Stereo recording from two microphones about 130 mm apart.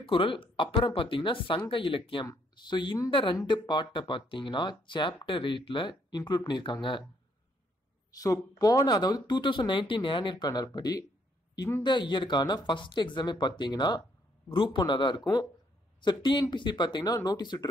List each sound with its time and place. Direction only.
0.0 s speech: 45° left (ahead or behind)
8.1 s speech: 25° left (ahead or behind)